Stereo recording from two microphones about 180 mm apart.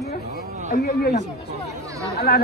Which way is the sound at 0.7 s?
65° left (ahead or behind).